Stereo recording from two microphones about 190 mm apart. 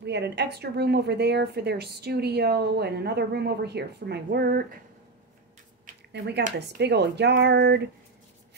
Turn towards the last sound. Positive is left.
turn(degrees=-60)  # may be behind; listen again after turning